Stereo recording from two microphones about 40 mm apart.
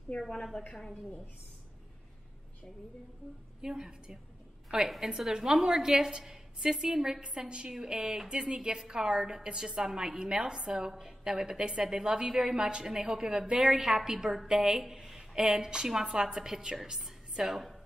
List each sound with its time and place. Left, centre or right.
0.1 s a woman's voice: left
3.6 s a woman's voice: centre